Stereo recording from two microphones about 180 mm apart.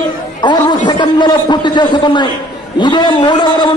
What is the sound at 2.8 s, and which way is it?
Speech, 25° left (ahead or behind).